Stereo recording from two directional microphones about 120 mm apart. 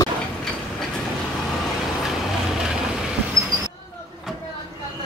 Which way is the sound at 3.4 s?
25° right (ahead or behind).